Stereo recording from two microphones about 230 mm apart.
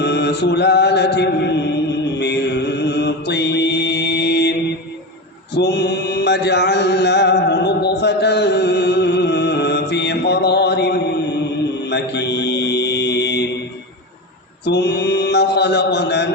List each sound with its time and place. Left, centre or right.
0.0 s mantra: left
5.5 s mantra: left
14.6 s mantra: left